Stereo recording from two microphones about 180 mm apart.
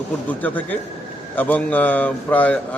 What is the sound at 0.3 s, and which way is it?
A man's voice, 10° left (ahead or behind).